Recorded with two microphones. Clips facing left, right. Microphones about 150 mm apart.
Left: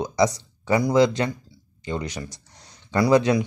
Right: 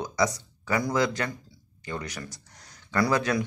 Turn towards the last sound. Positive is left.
turn(degrees=20)  # may be behind; listen again after turning